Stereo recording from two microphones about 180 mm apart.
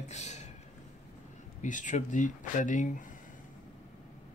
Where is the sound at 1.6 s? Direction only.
45° left (ahead or behind).